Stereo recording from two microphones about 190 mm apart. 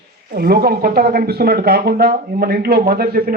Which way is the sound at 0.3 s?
55° right (ahead or behind).